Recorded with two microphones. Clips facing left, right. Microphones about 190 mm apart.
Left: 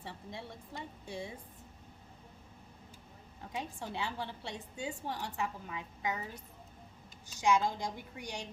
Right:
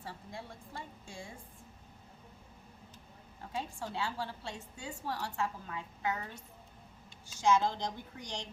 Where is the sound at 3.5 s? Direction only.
20° left (ahead or behind).